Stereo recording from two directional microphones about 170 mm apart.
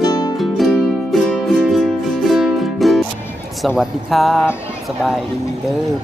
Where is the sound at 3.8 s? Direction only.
Centre (ahead or behind).